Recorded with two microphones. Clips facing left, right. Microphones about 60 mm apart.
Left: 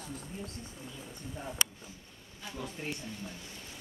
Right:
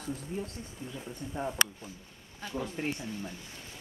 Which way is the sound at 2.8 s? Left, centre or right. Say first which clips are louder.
Right 5 dB; right.